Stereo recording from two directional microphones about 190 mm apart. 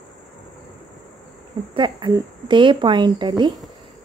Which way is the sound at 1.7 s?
25° right (ahead or behind).